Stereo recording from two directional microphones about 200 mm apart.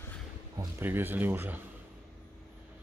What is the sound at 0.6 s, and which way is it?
Speech, 10° right (ahead or behind).